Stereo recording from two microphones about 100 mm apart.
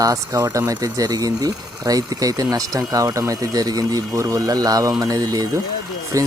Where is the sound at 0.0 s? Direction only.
35° right (ahead or behind).